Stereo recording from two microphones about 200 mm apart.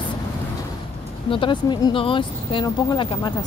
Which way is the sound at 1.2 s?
25° left (ahead or behind).